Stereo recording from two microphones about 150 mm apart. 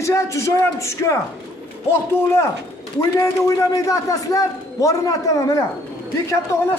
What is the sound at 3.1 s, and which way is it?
A man's voice, 20° left (ahead or behind).